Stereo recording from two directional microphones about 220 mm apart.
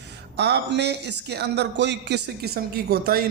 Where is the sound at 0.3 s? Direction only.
50° right (ahead or behind).